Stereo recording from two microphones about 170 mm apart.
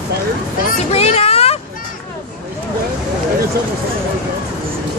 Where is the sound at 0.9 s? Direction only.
35° left (ahead or behind).